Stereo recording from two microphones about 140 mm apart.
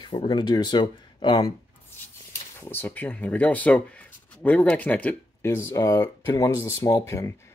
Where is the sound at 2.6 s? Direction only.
15° left (ahead or behind).